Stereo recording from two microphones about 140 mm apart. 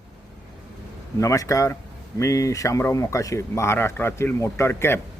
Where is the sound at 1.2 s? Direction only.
25° left (ahead or behind).